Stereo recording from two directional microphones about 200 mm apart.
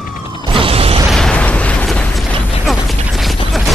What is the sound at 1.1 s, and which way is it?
Mechanisms, 5° left (ahead or behind).